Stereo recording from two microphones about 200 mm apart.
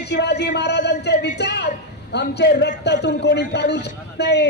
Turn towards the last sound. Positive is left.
turn(degrees=55)  # may be behind; listen again after turning